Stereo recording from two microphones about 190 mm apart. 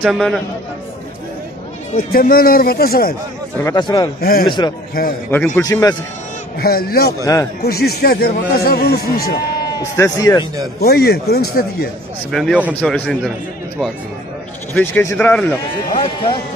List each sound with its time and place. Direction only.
0.0 s a man's voice: centre (ahead or behind)
2.0 s a man's voice: 50° left (ahead or behind)
3.7 s speech: 20° left (ahead or behind)
4.2 s a man's voice: 50° left (ahead or behind)
4.5 s speech: 25° left (ahead or behind)
5.0 s a man's voice: 50° left (ahead or behind)
5.6 s speech: 20° left (ahead or behind)
6.6 s a man's voice: 50° left (ahead or behind)
9.8 s speech: 20° left (ahead or behind)
10.8 s a man's voice: 55° left (ahead or behind)
12.3 s a man's voice: centre (ahead or behind)
14.7 s speech: 10° left (ahead or behind)
15.9 s speech: 25° left (ahead or behind)